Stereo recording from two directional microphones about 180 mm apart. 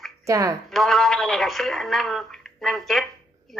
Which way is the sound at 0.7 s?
Centre (ahead or behind).